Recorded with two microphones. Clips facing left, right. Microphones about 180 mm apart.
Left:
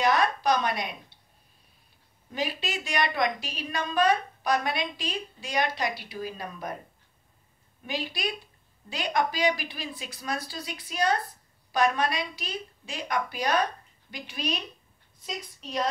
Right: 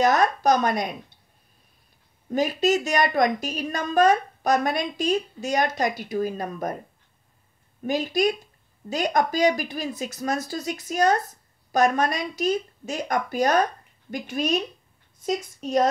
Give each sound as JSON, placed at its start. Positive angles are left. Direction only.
{"t": 0.0, "sound": "a woman's voice", "side_deg": -45}
{"t": 2.3, "sound": "a woman's voice", "side_deg": -45}
{"t": 7.8, "sound": "a woman's voice", "side_deg": -45}